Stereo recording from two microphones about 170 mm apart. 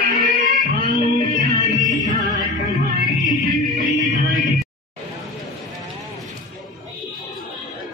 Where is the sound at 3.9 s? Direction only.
50° left (ahead or behind).